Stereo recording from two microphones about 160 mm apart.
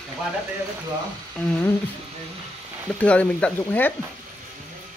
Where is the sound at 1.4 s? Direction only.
10° left (ahead or behind).